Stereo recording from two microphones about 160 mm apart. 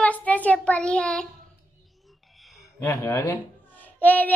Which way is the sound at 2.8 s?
15° left (ahead or behind).